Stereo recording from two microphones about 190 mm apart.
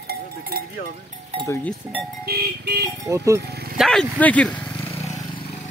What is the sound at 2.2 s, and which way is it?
Music, 60° right (ahead or behind).